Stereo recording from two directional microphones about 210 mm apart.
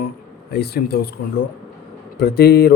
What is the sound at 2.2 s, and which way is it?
Speech, 50° left (ahead or behind).